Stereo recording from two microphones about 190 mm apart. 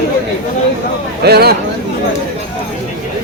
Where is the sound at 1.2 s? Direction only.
55° right (ahead or behind).